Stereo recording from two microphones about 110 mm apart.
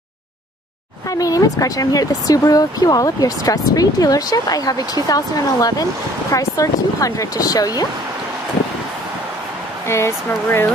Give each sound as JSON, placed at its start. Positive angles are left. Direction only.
{"t": 1.1, "sound": "speech", "side_deg": 35}
{"t": 9.8, "sound": "speech", "side_deg": 25}